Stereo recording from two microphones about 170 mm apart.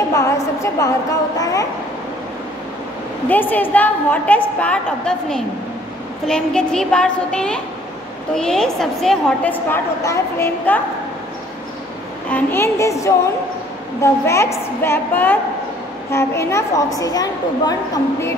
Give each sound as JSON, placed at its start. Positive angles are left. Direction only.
{"t": 0.1, "sound": "a woman's voice", "side_deg": 20}
{"t": 3.3, "sound": "a woman's voice", "side_deg": 10}
{"t": 12.3, "sound": "a woman's voice", "side_deg": 10}